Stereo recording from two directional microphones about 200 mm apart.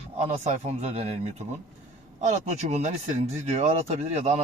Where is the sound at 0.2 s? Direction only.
35° right (ahead or behind).